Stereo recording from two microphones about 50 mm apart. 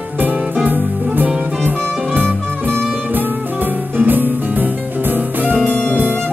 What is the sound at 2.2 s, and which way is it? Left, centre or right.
Music, right.